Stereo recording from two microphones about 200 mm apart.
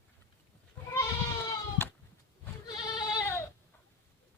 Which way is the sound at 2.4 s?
20° left (ahead or behind).